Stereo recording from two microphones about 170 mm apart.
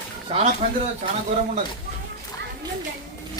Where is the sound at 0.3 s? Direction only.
35° right (ahead or behind).